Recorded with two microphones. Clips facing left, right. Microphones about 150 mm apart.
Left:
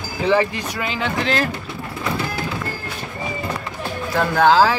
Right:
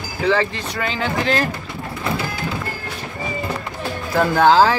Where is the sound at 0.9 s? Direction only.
Centre (ahead or behind).